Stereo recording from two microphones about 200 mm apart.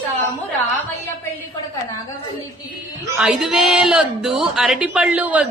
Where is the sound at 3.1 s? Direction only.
5° right (ahead or behind).